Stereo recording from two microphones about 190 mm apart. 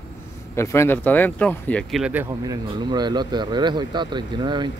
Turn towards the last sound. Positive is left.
turn(degrees=-25)  # may be behind; listen again after turning